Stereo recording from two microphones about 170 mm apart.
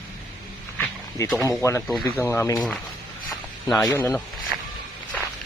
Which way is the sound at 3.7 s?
15° left (ahead or behind).